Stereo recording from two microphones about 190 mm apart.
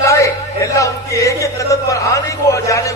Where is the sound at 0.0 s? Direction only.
15° left (ahead or behind).